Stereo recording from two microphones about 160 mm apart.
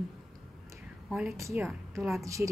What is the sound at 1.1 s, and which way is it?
Speech, 5° right (ahead or behind).